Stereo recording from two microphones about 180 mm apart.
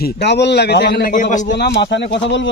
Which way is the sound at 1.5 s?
70° left (ahead or behind).